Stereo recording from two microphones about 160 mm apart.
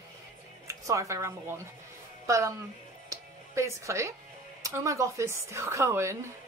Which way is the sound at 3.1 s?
20° right (ahead or behind).